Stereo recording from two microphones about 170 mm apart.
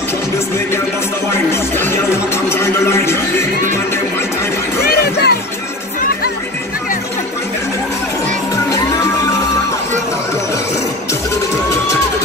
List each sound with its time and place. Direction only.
1.5 s music: 15° left (ahead or behind)
4.8 s music: 70° left (ahead or behind)